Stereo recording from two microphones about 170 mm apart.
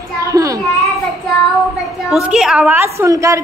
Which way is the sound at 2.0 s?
5° right (ahead or behind).